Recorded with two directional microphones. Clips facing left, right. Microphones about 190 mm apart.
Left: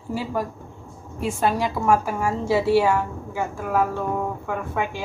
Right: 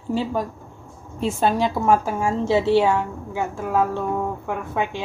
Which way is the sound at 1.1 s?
25° right (ahead or behind).